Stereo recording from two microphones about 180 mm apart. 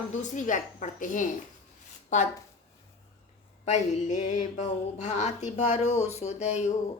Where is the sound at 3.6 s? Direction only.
40° left (ahead or behind).